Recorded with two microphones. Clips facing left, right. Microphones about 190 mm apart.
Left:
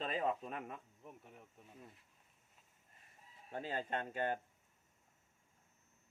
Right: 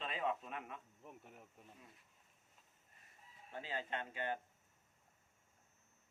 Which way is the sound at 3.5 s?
45° left (ahead or behind).